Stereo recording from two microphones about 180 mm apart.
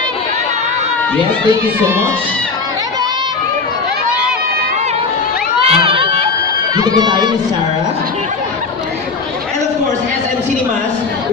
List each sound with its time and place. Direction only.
5.7 s crowd: 30° right (ahead or behind)
6.8 s speech: 25° right (ahead or behind)